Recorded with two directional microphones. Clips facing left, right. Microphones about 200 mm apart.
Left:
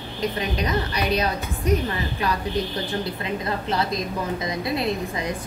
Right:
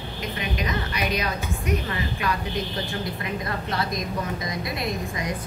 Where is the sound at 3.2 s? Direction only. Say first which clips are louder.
Left 3 dB; 25° left (ahead or behind).